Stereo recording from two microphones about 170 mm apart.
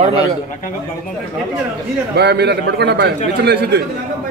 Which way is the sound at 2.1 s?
75° right (ahead or behind).